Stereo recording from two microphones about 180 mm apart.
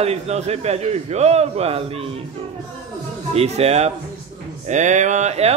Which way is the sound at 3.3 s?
35° right (ahead or behind).